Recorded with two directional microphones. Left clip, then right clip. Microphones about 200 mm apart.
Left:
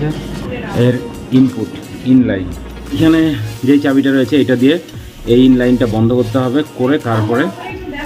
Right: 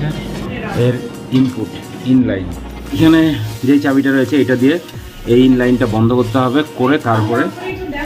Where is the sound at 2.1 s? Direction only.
10° left (ahead or behind).